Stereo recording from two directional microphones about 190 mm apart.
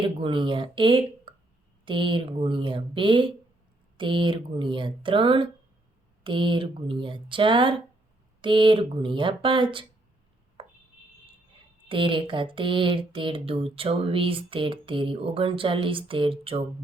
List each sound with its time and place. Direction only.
0.2 s speech: 25° right (ahead or behind)
10.6 s a sound: 30° right (ahead or behind)
11.9 s speech: 25° right (ahead or behind)